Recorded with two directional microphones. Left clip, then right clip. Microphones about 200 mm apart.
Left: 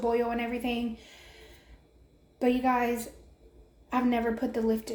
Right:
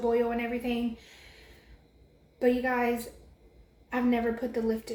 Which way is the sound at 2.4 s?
40° left (ahead or behind).